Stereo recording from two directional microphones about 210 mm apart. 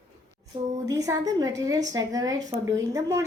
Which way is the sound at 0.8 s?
15° right (ahead or behind).